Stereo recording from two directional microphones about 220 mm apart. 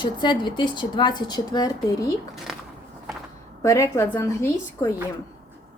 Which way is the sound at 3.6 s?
15° left (ahead or behind).